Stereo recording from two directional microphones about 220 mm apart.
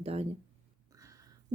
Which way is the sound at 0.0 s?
25° right (ahead or behind).